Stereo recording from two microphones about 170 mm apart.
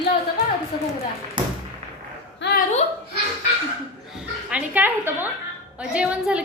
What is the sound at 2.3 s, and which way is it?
Speech, 75° left (ahead or behind).